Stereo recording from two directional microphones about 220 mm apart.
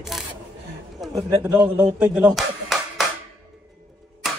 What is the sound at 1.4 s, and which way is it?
Speech, 5° right (ahead or behind).